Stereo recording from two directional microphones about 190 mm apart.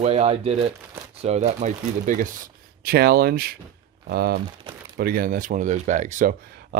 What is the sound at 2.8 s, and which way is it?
Speech, 55° right (ahead or behind).